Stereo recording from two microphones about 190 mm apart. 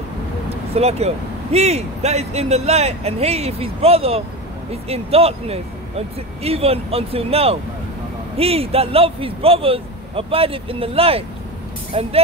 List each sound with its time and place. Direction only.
0.5 s speech: 35° right (ahead or behind)